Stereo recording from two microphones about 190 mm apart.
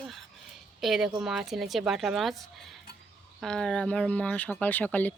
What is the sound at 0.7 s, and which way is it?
Speech, centre (ahead or behind).